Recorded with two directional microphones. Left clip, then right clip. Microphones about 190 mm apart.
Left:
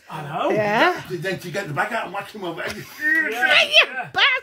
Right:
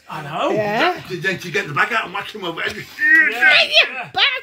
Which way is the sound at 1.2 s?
30° left (ahead or behind).